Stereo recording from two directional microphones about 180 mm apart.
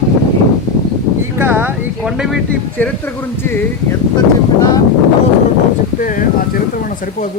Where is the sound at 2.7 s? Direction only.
10° left (ahead or behind).